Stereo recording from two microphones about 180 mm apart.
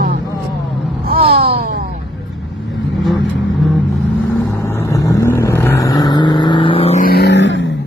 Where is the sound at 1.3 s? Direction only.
60° right (ahead or behind).